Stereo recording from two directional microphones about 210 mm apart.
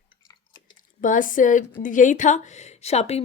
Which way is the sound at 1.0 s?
40° left (ahead or behind).